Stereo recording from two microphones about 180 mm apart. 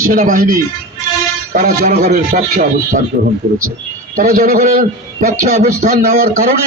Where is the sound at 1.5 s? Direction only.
60° right (ahead or behind).